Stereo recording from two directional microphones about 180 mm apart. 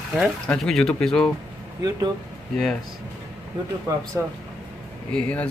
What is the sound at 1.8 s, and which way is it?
Speech, 20° right (ahead or behind).